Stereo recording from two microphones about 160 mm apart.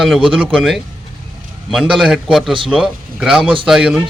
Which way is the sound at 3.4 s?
35° right (ahead or behind).